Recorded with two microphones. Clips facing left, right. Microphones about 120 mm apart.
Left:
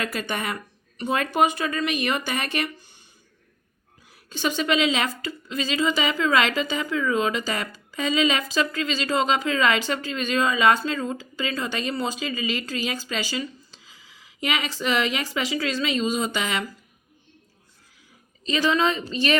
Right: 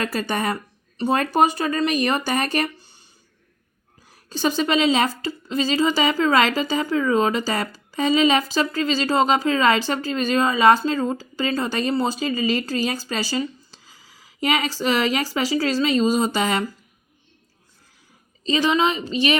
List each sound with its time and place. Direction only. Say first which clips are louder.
0.0 s a woman's voice: right 4 dB; 35° right (ahead or behind)
4.1 s a woman's voice: right 4 dB; 35° right (ahead or behind)
18.4 s a woman's voice: right 2 dB; 25° right (ahead or behind)